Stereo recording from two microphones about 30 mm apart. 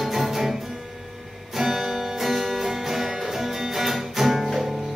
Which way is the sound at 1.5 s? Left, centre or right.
Centre.